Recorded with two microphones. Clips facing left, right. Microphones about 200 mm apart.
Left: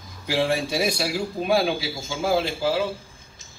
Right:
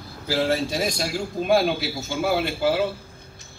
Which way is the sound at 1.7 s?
55° right (ahead or behind).